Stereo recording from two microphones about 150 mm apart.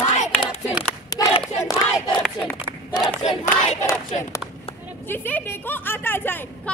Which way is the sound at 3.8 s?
20° left (ahead or behind).